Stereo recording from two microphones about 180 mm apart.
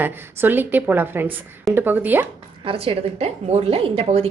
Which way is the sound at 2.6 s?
30° right (ahead or behind).